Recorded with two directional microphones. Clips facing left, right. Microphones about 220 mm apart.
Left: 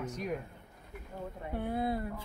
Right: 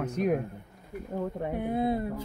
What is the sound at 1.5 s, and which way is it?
Speech, 20° right (ahead or behind).